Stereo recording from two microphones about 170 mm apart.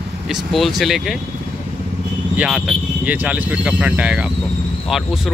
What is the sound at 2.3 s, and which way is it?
Speech, centre (ahead or behind).